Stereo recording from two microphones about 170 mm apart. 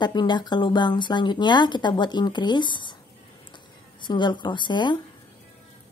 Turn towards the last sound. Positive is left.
turn(degrees=25)  # may be behind; listen again after turning